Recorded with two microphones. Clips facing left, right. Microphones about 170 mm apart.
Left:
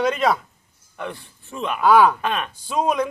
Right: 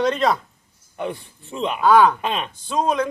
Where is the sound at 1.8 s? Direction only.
5° left (ahead or behind).